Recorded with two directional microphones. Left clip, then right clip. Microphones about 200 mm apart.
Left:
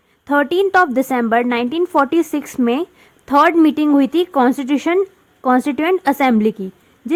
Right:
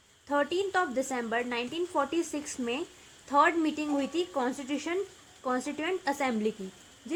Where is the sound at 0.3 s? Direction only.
40° left (ahead or behind).